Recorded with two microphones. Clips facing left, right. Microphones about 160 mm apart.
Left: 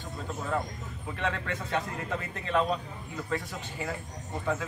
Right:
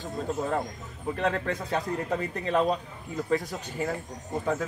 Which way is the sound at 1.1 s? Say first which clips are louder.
Right 5 dB; 40° right (ahead or behind).